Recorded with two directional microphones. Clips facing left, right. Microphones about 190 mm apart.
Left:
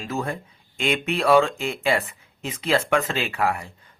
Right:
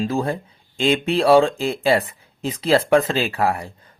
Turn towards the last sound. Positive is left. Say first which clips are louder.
# right 4 dB
turn(degrees=-35)  # may be behind; listen again after turning